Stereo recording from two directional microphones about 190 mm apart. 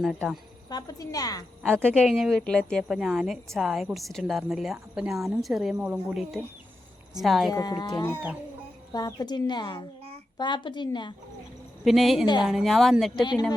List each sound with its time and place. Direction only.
0.0 s a woman's voice: centre (ahead or behind)
0.7 s a woman's voice: 20° left (ahead or behind)
1.6 s a woman's voice: 10° right (ahead or behind)
7.5 s a woman's voice: 20° left (ahead or behind)
11.9 s a woman's voice: centre (ahead or behind)
12.2 s a woman's voice: 25° left (ahead or behind)
12.5 s a woman's voice: centre (ahead or behind)